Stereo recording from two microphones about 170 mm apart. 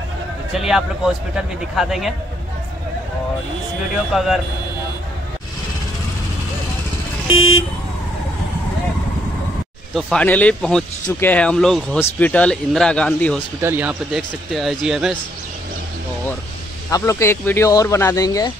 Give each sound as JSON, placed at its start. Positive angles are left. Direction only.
{"t": 0.6, "sound": "a man's voice", "side_deg": -5}
{"t": 4.1, "sound": "a man's voice", "side_deg": 0}
{"t": 9.9, "sound": "a man's voice", "side_deg": 5}
{"t": 13.6, "sound": "a man's voice", "side_deg": -10}
{"t": 16.9, "sound": "speech", "side_deg": 15}